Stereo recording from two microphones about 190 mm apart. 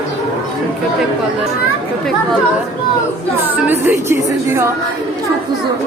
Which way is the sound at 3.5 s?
10° right (ahead or behind).